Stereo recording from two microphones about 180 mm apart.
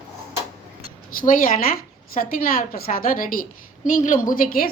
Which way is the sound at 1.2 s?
50° left (ahead or behind).